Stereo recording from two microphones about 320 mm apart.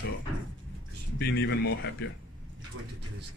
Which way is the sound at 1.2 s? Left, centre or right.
Left.